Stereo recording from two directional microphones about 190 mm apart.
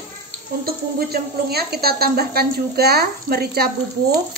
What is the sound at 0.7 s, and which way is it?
A woman's voice, 55° right (ahead or behind).